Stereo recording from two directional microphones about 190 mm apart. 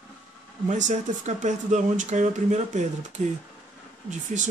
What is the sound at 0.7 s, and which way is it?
Speech, 40° right (ahead or behind).